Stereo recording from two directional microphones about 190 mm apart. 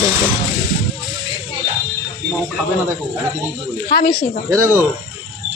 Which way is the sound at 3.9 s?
50° left (ahead or behind).